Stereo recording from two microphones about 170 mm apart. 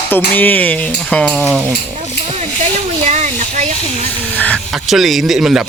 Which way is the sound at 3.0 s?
45° right (ahead or behind).